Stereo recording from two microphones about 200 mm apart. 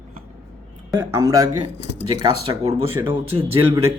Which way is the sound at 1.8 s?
60° left (ahead or behind).